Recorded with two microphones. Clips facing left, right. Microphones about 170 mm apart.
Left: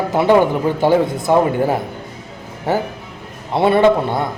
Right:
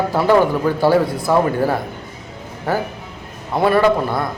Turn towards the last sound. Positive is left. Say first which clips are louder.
# left 2 dB
turn(degrees=25)  # may be behind; listen again after turning